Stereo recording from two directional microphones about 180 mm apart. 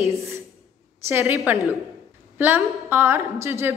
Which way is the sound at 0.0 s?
15° right (ahead or behind).